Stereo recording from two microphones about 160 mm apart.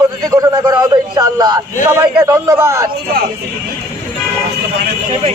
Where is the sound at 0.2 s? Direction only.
25° right (ahead or behind).